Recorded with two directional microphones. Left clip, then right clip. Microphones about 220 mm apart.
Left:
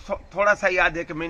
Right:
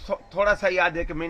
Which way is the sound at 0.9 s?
20° right (ahead or behind).